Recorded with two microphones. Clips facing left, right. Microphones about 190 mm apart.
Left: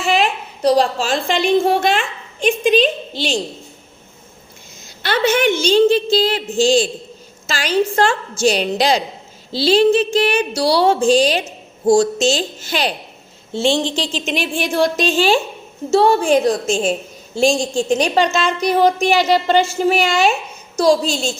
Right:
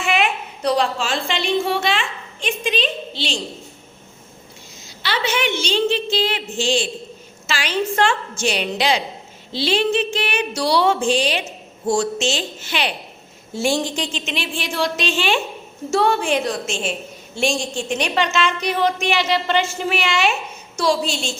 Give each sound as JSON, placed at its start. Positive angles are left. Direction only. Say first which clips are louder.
{"t": 0.0, "sound": "a woman's voice", "louder": "left 3 dB", "side_deg": 35}
{"t": 5.0, "sound": "a woman's voice", "louder": "left 7 dB", "side_deg": 50}
{"t": 13.5, "sound": "a woman's voice", "louder": "left 3 dB", "side_deg": 25}
{"t": 14.3, "sound": "a woman's voice", "louder": "left 6 dB", "side_deg": 45}